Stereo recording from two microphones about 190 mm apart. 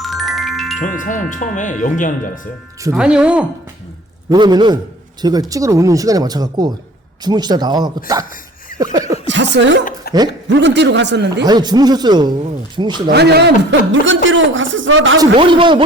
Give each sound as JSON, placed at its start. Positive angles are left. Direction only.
{"t": 0.0, "sound": "music", "side_deg": 0}
{"t": 0.8, "sound": "speech", "side_deg": 45}
{"t": 2.9, "sound": "speech", "side_deg": -5}
{"t": 4.3, "sound": "speech", "side_deg": -20}
{"t": 8.8, "sound": "a sound", "side_deg": -20}
{"t": 9.2, "sound": "chuckle", "side_deg": -70}
{"t": 10.0, "sound": "a sound", "side_deg": 55}
{"t": 10.6, "sound": "a man's voice", "side_deg": -70}
{"t": 11.4, "sound": "speech", "side_deg": -20}
{"t": 13.1, "sound": "a man's voice", "side_deg": -60}
{"t": 15.2, "sound": "speech", "side_deg": -25}